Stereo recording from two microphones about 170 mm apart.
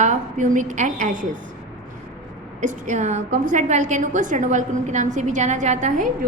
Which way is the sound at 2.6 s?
45° right (ahead or behind).